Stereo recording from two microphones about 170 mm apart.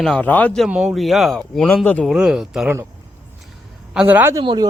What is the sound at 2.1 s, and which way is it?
Speech, 5° right (ahead or behind).